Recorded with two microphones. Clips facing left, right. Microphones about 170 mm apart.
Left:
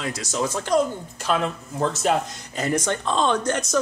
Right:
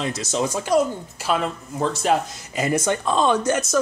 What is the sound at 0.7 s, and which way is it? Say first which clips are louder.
A woman's voice: right 2 dB; 10° right (ahead or behind).